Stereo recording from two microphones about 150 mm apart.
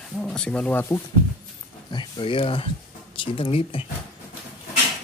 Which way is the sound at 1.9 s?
35° left (ahead or behind).